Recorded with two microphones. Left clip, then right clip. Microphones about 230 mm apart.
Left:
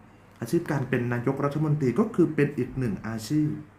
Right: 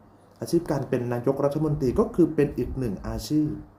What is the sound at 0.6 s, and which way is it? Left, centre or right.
A man's voice, centre.